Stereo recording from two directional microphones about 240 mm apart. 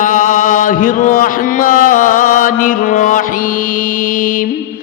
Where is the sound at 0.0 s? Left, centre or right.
Left.